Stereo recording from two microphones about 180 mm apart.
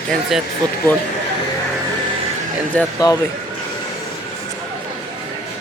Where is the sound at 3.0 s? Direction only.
20° left (ahead or behind).